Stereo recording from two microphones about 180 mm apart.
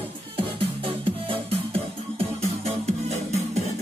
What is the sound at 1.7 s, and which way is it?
Music, 35° right (ahead or behind).